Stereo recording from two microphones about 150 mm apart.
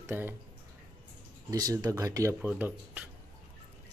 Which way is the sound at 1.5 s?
25° right (ahead or behind).